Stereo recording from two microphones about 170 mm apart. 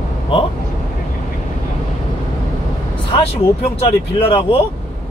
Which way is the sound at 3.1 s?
35° left (ahead or behind).